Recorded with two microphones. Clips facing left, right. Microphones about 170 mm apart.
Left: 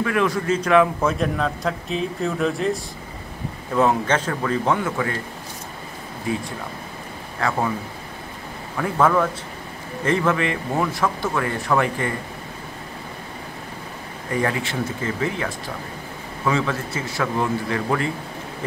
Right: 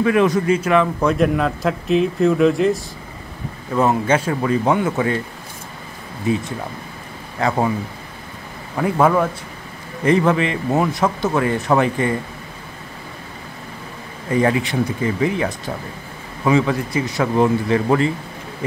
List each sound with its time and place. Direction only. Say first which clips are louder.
0.0 s a man's voice: right 6 dB; 20° right (ahead or behind)
0.6 s speech: even; centre (ahead or behind); by 5.2 s 20° right (ahead or behind)
6.3 s a man's voice: right 5 dB; 20° right (ahead or behind)
9.0 s a man's voice: right 2 dB; 15° right (ahead or behind)
14.3 s a man's voice: right 6 dB; 20° right (ahead or behind)